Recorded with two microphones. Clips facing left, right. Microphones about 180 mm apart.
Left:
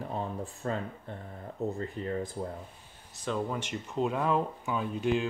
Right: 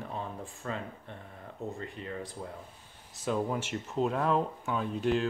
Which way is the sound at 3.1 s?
5° right (ahead or behind).